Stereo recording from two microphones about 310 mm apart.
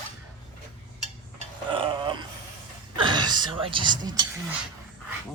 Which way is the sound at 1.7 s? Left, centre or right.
Centre.